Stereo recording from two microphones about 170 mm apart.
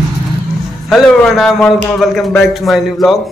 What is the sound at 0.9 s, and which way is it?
A man's voice, centre (ahead or behind).